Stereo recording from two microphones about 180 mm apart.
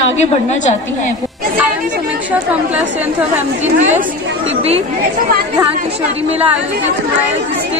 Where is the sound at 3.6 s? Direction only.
40° right (ahead or behind).